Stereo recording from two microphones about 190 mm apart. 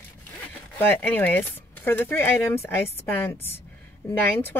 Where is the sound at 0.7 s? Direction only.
10° left (ahead or behind).